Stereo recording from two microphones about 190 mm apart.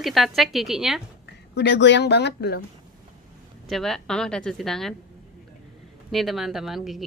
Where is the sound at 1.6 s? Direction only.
65° left (ahead or behind).